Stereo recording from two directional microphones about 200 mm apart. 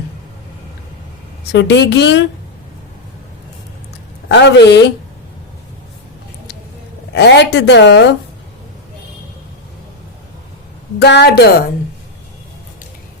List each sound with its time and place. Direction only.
1.5 s a woman's voice: 60° left (ahead or behind)
4.3 s a woman's voice: 60° left (ahead or behind)
7.1 s a woman's voice: 60° left (ahead or behind)
11.0 s a woman's voice: 55° left (ahead or behind)